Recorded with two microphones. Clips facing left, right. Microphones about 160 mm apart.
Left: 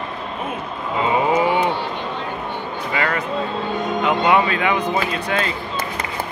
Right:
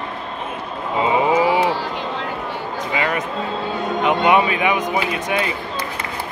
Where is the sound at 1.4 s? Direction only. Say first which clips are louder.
Right 1 dB; 90° right.